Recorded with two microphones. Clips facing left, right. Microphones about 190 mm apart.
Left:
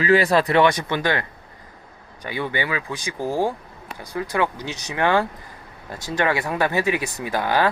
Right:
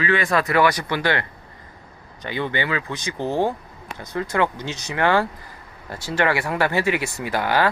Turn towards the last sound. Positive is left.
turn(degrees=20)  # may be behind; listen again after turning